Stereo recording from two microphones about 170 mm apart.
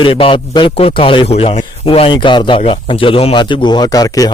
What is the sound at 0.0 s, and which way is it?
A man's voice, 30° left (ahead or behind).